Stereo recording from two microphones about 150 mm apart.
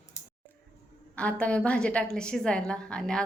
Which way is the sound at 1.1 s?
10° left (ahead or behind).